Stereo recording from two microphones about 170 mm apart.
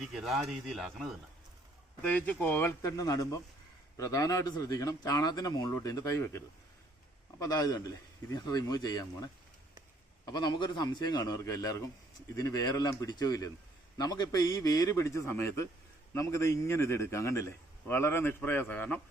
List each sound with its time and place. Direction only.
0.0 s a man's voice: centre (ahead or behind)